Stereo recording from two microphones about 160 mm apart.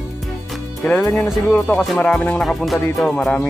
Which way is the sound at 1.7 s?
Centre (ahead or behind).